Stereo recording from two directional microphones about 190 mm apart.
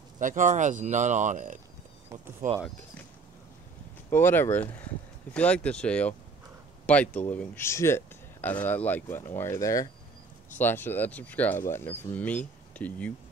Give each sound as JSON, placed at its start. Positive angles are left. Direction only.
{"t": 0.2, "sound": "speech", "side_deg": -40}
{"t": 4.1, "sound": "speech", "side_deg": 10}